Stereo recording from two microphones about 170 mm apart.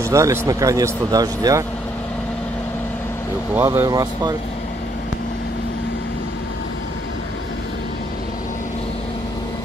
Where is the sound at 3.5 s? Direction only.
15° right (ahead or behind).